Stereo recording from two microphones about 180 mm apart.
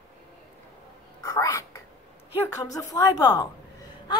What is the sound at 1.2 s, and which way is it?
Whispering, 20° left (ahead or behind).